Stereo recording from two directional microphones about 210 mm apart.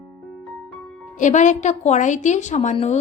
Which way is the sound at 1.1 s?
35° left (ahead or behind).